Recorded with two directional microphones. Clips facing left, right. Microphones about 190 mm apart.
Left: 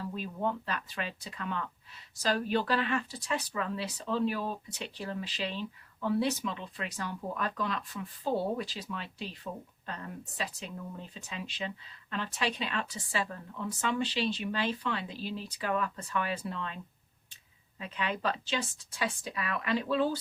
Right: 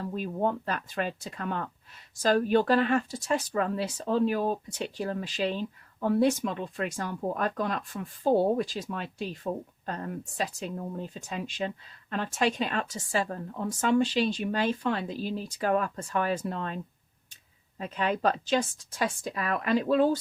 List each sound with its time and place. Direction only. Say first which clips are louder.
0.0 s speech: right 5 dB; 45° right (ahead or behind)